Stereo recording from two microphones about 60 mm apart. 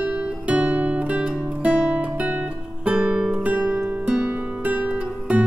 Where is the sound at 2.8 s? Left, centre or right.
Centre.